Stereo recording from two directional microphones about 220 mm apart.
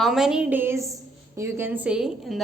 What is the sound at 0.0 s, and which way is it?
A woman's voice, centre (ahead or behind).